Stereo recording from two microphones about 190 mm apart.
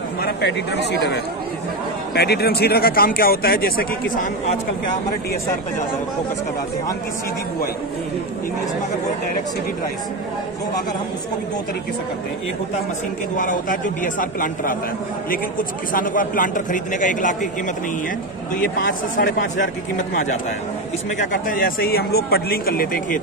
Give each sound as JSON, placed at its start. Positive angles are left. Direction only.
{"t": 0.9, "sound": "speech", "side_deg": 60}
{"t": 13.4, "sound": "speech", "side_deg": 45}
{"t": 18.6, "sound": "speech", "side_deg": 50}
{"t": 21.2, "sound": "speech", "side_deg": 50}